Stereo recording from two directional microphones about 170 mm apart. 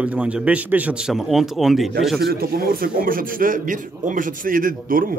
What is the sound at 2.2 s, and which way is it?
A man's voice, 60° right (ahead or behind).